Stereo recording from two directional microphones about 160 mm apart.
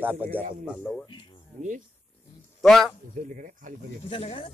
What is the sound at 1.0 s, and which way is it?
Music, 30° left (ahead or behind).